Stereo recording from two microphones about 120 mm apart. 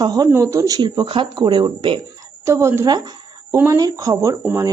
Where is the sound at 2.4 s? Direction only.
25° right (ahead or behind).